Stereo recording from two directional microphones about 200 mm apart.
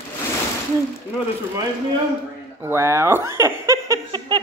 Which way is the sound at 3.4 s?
15° right (ahead or behind).